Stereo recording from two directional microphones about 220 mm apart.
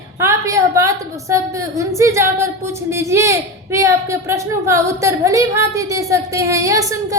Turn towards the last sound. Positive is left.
turn(degrees=-15)  # may be behind; listen again after turning